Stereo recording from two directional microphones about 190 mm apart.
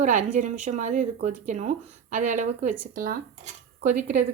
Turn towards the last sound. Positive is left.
turn(degrees=-40)  # may be behind; listen again after turning